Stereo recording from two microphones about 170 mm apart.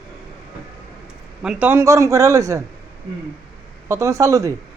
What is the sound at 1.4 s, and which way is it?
A man's voice, 10° right (ahead or behind).